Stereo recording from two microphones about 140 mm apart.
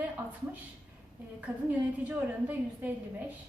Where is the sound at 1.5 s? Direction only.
5° right (ahead or behind).